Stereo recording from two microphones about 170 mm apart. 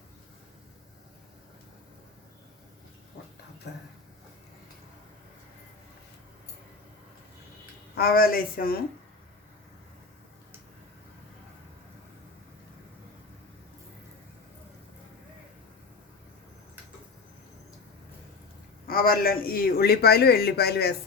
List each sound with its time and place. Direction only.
7.9 s speech: 60° left (ahead or behind)
18.9 s speech: 60° left (ahead or behind)